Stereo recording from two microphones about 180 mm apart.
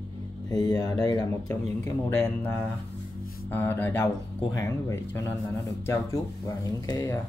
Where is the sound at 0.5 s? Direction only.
20° left (ahead or behind).